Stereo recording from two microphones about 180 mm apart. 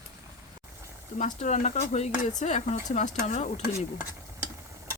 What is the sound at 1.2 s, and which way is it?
Speech, 45° left (ahead or behind).